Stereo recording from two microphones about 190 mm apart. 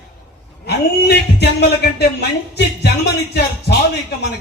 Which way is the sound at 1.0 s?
60° left (ahead or behind).